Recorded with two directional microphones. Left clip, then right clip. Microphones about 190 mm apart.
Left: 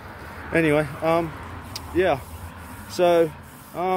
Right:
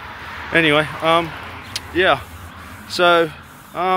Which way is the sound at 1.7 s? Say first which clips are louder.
Right 5 dB; 5° left (ahead or behind).